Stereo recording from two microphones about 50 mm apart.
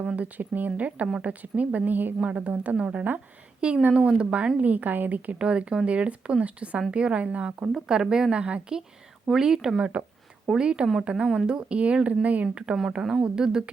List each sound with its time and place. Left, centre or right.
0.2 s a woman's voice: right
2.7 s a woman's voice: centre; by 5.4 s right
5.4 s a woman's voice: centre
9.3 s a woman's voice: centre